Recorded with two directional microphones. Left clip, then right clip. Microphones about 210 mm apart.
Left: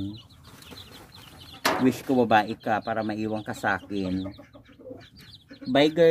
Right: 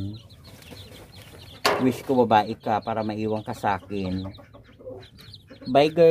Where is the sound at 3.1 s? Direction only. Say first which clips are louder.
Right 2 dB; 5° right (ahead or behind).